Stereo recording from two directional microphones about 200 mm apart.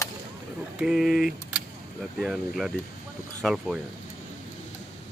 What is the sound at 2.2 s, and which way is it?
Speech, centre (ahead or behind).